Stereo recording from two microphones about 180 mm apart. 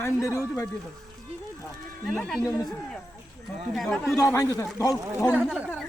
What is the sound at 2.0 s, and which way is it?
Speech, centre (ahead or behind).